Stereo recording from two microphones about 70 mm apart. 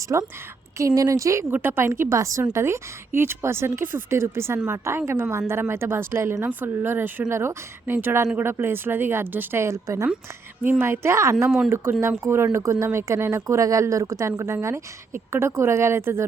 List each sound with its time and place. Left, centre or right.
0.1 s a woman's voice: right
0.8 s a woman's voice: right
1.5 s speech: right
10.6 s a woman's voice: right